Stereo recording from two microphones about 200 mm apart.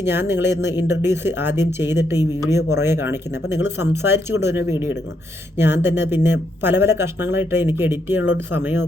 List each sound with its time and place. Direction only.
0.0 s speech: 10° right (ahead or behind)
0.4 s speech: 60° left (ahead or behind)
1.0 s speech: 10° right (ahead or behind)